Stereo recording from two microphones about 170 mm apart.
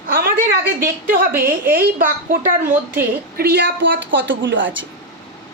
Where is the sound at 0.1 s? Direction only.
60° right (ahead or behind).